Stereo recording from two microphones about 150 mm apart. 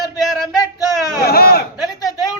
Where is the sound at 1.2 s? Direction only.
90° left.